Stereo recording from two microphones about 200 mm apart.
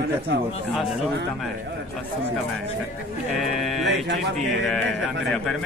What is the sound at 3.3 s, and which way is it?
A man's voice, centre (ahead or behind).